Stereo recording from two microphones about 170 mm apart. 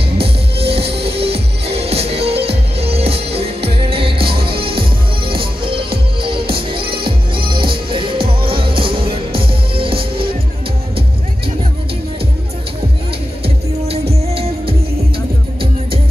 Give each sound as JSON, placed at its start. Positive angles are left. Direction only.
{"t": 0.2, "sound": "music", "side_deg": -35}
{"t": 13.8, "sound": "music", "side_deg": -35}